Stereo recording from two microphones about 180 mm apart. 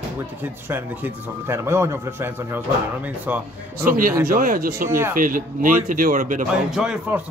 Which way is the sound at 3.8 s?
50° right (ahead or behind).